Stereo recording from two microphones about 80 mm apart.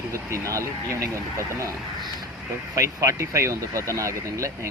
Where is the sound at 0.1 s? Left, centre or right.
Right.